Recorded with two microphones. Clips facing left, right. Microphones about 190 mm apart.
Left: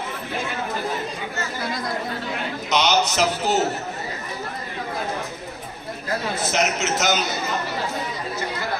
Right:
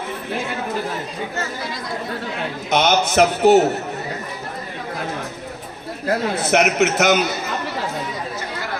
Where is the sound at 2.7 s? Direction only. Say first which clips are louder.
Right 3 dB; 50° right (ahead or behind).